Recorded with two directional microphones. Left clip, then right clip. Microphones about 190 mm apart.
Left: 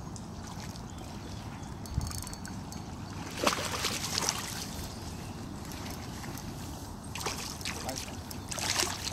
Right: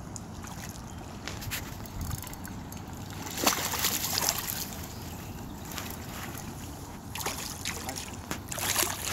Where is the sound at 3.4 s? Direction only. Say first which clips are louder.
Right 2 dB; 40° right (ahead or behind).